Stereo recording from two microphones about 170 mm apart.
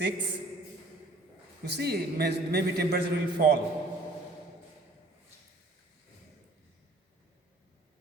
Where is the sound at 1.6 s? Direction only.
70° right (ahead or behind).